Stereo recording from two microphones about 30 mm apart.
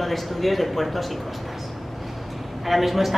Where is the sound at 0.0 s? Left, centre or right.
Centre.